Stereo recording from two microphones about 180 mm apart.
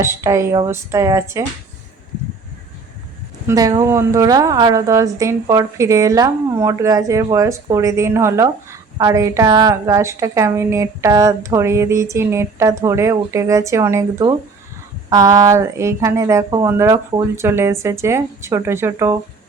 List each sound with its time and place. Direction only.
0.0 s a woman's voice: 15° right (ahead or behind)
3.4 s a woman's voice: 20° right (ahead or behind)